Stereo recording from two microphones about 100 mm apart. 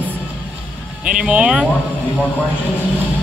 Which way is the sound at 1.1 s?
15° right (ahead or behind).